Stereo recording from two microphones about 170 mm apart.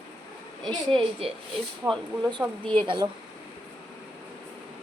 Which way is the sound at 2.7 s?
30° right (ahead or behind).